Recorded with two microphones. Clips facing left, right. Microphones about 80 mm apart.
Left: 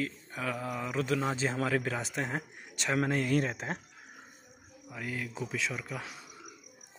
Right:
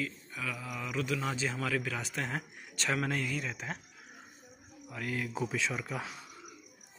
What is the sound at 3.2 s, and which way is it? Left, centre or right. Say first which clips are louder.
Speech: left 7 dB; left.